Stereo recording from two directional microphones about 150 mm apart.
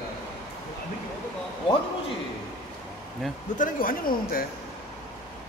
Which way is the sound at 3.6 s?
70° left (ahead or behind).